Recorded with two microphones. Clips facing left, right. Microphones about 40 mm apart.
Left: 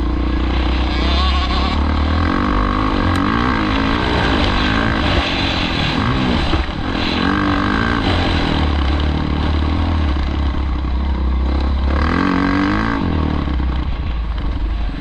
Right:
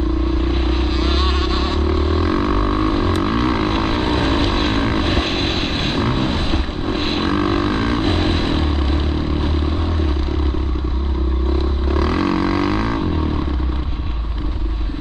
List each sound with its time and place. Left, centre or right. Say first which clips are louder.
0.5 s vehicle: even; left
12.0 s didgeridoo: left 2 dB; left